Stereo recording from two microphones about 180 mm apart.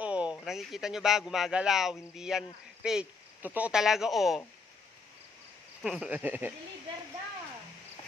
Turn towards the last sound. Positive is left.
turn(degrees=-10)  # may be behind; listen again after turning